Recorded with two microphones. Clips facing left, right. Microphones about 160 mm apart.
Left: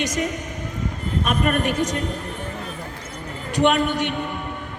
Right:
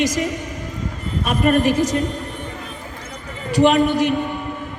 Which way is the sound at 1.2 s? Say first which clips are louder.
Right 6 dB; 30° right (ahead or behind).